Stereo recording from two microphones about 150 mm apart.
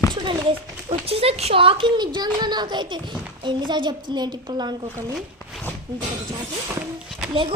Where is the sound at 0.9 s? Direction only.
40° right (ahead or behind).